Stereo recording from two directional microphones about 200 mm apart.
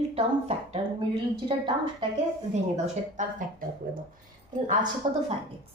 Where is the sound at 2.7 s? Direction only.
35° right (ahead or behind).